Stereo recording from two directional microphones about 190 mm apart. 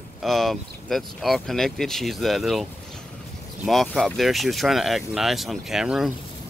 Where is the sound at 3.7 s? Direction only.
Centre (ahead or behind).